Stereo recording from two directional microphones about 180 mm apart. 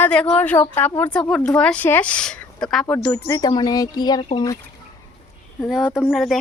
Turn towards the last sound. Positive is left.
turn(degrees=0)  # may be behind; listen again after turning